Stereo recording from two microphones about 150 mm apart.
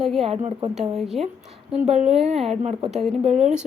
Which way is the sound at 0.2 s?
40° right (ahead or behind).